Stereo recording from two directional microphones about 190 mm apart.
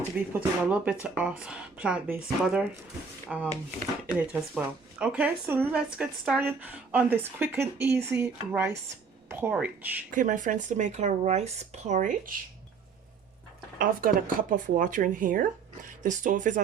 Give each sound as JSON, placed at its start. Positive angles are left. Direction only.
{"t": 0.3, "sound": "speech", "side_deg": -5}
{"t": 10.1, "sound": "speech", "side_deg": -45}
{"t": 13.7, "sound": "speech", "side_deg": -50}